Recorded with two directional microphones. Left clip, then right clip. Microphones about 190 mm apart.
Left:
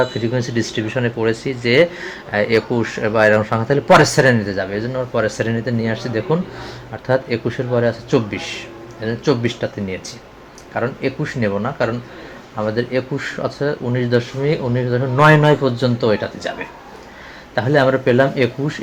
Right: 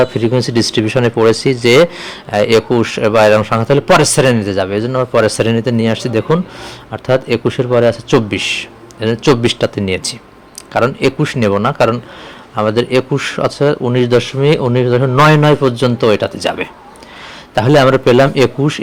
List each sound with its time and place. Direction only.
0.0 s speech: 30° right (ahead or behind)
17.5 s speech: 35° right (ahead or behind)